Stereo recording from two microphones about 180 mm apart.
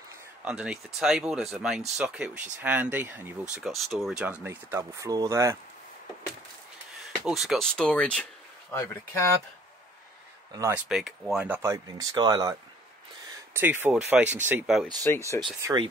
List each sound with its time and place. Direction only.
0.5 s speech: 5° right (ahead or behind)
7.1 s speech: centre (ahead or behind); by 9.3 s 15° left (ahead or behind)
10.5 s speech: 15° right (ahead or behind)
10.9 s speech: centre (ahead or behind)
15.6 s speech: 25° right (ahead or behind)